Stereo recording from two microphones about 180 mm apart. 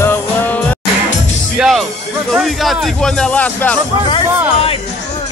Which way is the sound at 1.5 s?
Centre (ahead or behind).